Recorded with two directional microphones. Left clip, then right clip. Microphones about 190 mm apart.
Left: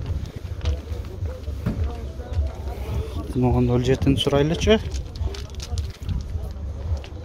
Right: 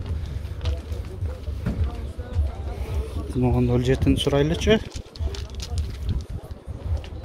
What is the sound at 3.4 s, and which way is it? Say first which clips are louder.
Speech: left 1 dB; 5° left (ahead or behind).